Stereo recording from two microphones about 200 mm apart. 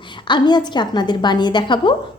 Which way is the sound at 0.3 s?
20° left (ahead or behind).